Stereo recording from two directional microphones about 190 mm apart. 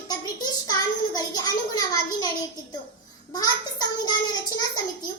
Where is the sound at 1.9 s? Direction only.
20° left (ahead or behind).